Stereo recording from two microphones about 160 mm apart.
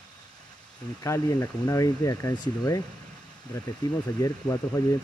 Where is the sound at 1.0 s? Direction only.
20° left (ahead or behind).